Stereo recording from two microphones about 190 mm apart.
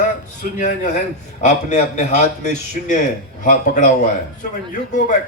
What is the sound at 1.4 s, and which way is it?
A man's voice, 40° left (ahead or behind).